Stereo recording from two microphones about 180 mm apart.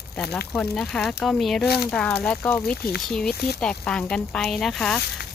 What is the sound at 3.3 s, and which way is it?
Speech, 65° left (ahead or behind).